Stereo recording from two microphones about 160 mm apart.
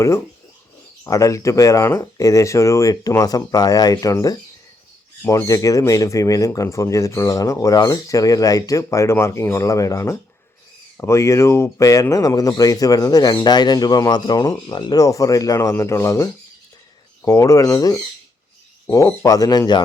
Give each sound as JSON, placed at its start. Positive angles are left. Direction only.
{"t": 1.0, "sound": "speech", "side_deg": 20}